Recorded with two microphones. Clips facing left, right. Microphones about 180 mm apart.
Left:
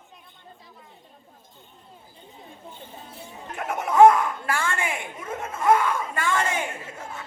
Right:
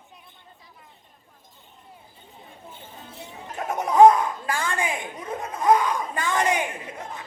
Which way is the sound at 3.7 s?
20° right (ahead or behind).